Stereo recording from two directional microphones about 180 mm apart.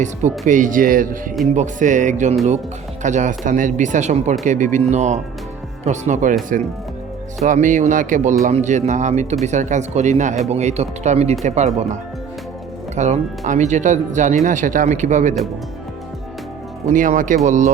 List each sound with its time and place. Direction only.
0.4 s speech: 45° right (ahead or behind)
7.4 s speech: 45° right (ahead or behind)
13.0 s speech: 40° right (ahead or behind)
16.9 s speech: 45° right (ahead or behind)